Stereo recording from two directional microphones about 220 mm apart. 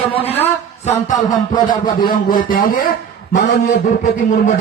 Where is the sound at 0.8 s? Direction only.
30° left (ahead or behind).